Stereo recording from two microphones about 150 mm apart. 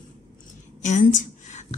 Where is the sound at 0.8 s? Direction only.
55° left (ahead or behind).